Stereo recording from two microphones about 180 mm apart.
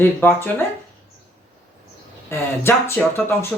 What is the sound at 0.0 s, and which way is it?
Speech, 15° left (ahead or behind).